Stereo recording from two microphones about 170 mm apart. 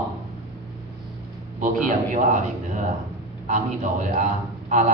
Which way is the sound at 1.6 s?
50° right (ahead or behind).